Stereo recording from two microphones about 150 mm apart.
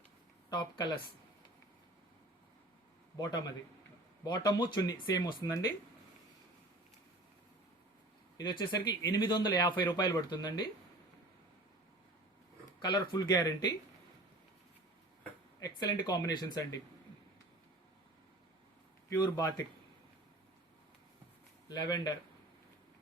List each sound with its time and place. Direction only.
0.5 s speech: 30° left (ahead or behind)
3.2 s speech: 30° left (ahead or behind)
8.4 s speech: 30° left (ahead or behind)
12.8 s speech: 30° left (ahead or behind)
15.6 s speech: 25° left (ahead or behind)
21.7 s speech: 30° left (ahead or behind)